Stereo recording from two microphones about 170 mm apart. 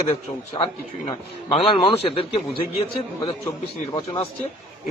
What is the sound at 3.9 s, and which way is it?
Speech, 30° left (ahead or behind).